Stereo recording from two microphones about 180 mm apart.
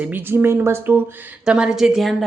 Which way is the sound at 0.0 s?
10° right (ahead or behind).